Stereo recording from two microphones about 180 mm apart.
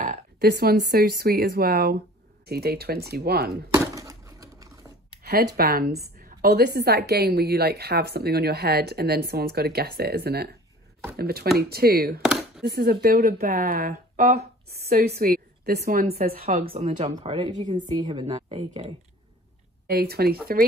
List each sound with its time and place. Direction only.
0.4 s a woman's voice: 60° right (ahead or behind)
3.7 s a sound: 20° right (ahead or behind)
5.2 s a sound: 60° right (ahead or behind)
5.6 s a woman's voice: 55° right (ahead or behind)
12.2 s a sound: 5° right (ahead or behind)
12.6 s a woman's voice: 60° right (ahead or behind)
16.9 s speech: 45° right (ahead or behind)
17.2 s speech: 30° right (ahead or behind)
17.7 s speech: 40° right (ahead or behind)
19.9 s a woman's voice: 60° right (ahead or behind)